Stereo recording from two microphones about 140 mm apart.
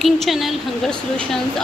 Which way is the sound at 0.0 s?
Centre (ahead or behind).